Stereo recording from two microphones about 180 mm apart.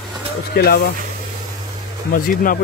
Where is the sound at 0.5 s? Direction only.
65° left (ahead or behind).